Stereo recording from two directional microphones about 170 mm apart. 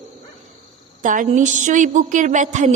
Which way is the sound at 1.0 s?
50° right (ahead or behind).